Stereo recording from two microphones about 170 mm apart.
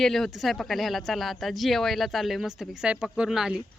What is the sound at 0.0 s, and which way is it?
Speech, centre (ahead or behind).